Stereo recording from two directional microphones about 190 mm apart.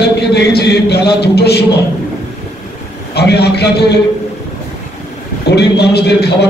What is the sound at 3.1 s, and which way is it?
Speech, 60° left (ahead or behind).